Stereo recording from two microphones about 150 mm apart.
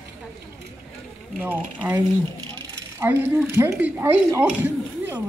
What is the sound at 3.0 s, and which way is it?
Speech, 15° right (ahead or behind).